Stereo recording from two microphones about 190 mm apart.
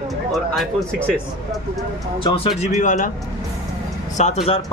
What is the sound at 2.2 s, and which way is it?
Speech, 30° left (ahead or behind).